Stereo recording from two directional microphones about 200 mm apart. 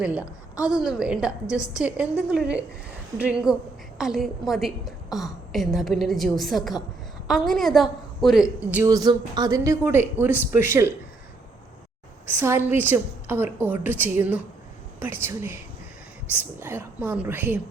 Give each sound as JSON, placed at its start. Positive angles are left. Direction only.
{"t": 0.0, "sound": "a woman's voice", "side_deg": -5}
{"t": 8.8, "sound": "speech", "side_deg": -20}
{"t": 12.4, "sound": "speech", "side_deg": -10}